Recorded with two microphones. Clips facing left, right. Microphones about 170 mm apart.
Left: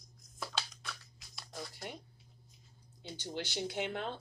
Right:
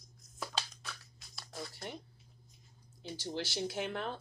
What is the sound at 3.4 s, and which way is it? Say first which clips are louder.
Speech: even; 20° left (ahead or behind).